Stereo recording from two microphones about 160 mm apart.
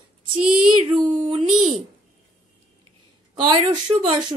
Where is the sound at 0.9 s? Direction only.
35° right (ahead or behind).